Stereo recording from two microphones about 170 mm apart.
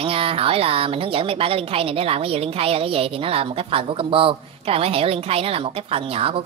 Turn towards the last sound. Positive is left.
turn(degrees=-35)  # may be behind; listen again after turning